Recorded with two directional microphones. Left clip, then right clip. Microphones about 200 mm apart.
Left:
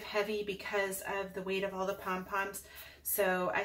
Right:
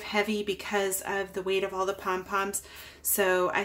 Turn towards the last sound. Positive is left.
turn(degrees=-50)  # may be behind; listen again after turning